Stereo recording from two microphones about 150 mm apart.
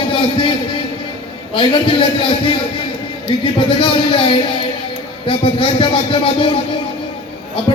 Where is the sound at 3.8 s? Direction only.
35° left (ahead or behind).